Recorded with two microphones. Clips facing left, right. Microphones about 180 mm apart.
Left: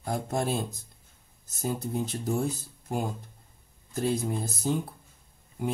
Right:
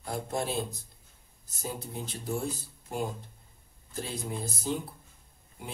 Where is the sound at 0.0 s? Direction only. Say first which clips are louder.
Left 3 dB; 45° left (ahead or behind).